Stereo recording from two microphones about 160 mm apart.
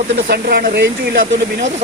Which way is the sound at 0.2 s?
75° right (ahead or behind).